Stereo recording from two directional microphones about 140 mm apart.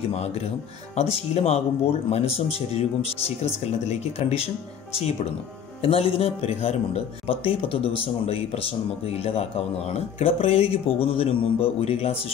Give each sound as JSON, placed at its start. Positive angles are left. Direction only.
{"t": 0.1, "sound": "speech", "side_deg": 50}
{"t": 5.8, "sound": "speech", "side_deg": 45}